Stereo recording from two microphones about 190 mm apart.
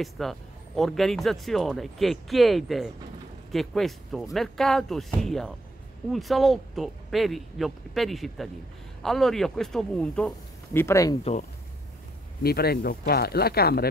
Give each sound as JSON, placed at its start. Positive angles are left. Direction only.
{"t": 0.0, "sound": "speech", "side_deg": 0}
{"t": 12.4, "sound": "speech", "side_deg": 55}